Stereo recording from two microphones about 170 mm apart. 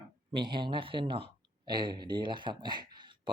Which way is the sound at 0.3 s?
25° right (ahead or behind).